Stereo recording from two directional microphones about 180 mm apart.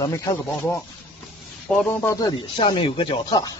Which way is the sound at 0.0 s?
20° left (ahead or behind).